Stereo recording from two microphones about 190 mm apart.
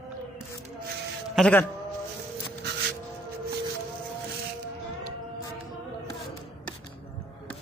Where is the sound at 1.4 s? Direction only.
5° left (ahead or behind).